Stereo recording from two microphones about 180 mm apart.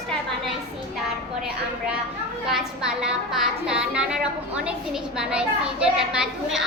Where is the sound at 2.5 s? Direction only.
5° right (ahead or behind).